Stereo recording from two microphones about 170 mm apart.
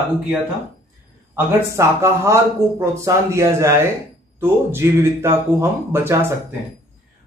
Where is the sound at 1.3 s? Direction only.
15° right (ahead or behind).